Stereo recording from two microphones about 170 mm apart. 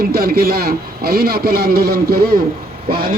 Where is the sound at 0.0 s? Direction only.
60° right (ahead or behind).